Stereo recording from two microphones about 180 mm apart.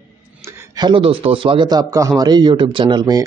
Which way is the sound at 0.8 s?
30° right (ahead or behind).